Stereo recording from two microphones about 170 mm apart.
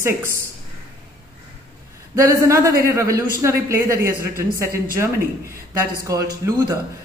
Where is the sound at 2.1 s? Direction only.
20° right (ahead or behind).